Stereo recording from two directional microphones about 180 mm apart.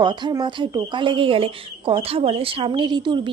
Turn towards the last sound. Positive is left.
turn(degrees=-25)  # may be behind; listen again after turning